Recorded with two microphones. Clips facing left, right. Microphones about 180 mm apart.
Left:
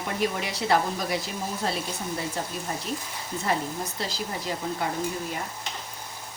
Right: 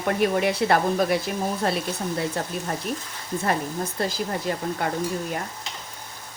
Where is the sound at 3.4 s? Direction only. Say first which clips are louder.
Right 2 dB; 50° right (ahead or behind).